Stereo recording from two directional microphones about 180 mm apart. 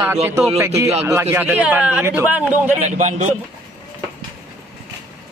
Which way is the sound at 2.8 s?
40° right (ahead or behind).